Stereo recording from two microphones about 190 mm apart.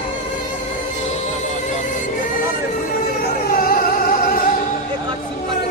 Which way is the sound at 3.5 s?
50° left (ahead or behind).